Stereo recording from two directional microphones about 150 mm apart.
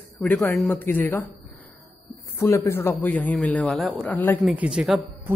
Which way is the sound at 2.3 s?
20° left (ahead or behind).